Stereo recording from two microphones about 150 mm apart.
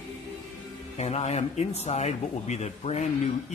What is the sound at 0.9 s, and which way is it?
Speech, 45° left (ahead or behind).